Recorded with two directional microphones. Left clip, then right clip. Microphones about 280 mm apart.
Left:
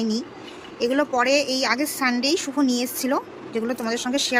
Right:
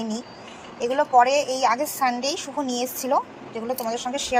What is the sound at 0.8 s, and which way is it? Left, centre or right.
A woman's voice, centre.